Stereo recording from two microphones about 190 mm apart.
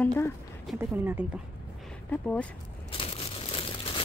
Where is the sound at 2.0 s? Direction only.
5° left (ahead or behind).